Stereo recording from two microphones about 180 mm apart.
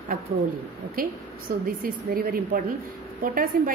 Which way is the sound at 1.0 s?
50° right (ahead or behind).